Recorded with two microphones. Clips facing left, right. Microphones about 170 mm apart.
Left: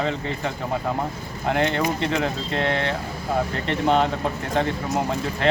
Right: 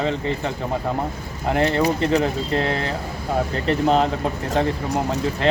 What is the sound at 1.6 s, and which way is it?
Speech, 35° right (ahead or behind).